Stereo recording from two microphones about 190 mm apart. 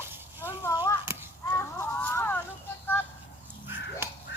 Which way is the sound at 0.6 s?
20° left (ahead or behind).